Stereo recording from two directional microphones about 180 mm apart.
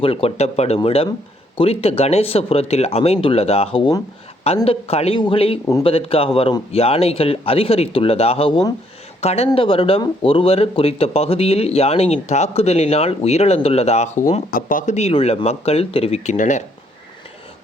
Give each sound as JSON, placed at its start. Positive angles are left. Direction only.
{"t": 0.0, "sound": "speech", "side_deg": 30}
{"t": 14.5, "sound": "speech", "side_deg": 45}